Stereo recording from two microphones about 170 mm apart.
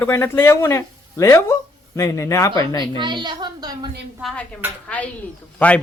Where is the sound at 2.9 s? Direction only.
25° right (ahead or behind).